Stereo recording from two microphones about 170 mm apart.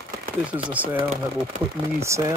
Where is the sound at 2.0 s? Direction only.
15° right (ahead or behind).